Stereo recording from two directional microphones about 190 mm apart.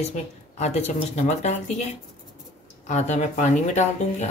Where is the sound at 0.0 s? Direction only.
35° left (ahead or behind).